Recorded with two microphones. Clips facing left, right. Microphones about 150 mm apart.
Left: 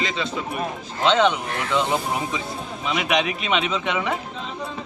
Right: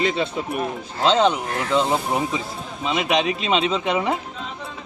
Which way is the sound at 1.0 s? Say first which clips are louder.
Right 1 dB; 35° right (ahead or behind).